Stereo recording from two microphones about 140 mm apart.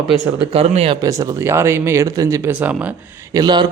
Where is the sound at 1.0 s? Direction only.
25° right (ahead or behind).